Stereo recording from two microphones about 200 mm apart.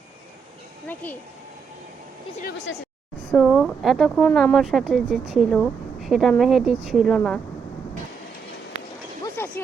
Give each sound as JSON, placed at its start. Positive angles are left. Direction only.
{"t": 1.0, "sound": "speech", "side_deg": 10}
{"t": 2.4, "sound": "speech", "side_deg": 55}
{"t": 3.3, "sound": "speech", "side_deg": 0}
{"t": 9.4, "sound": "a sound", "side_deg": 10}